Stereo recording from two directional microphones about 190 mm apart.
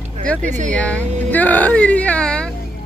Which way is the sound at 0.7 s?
5° left (ahead or behind).